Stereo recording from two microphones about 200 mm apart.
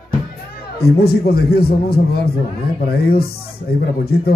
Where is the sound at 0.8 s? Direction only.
50° left (ahead or behind).